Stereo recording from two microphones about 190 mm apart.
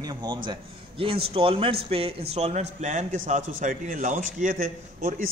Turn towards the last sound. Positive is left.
turn(degrees=-45)  # may be behind; listen again after turning